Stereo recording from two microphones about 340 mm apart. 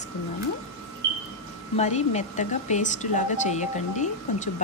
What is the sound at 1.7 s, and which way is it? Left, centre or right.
A woman's voice, centre.